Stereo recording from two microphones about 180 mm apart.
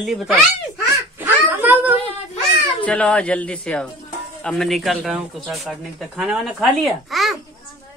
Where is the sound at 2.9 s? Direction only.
5° left (ahead or behind).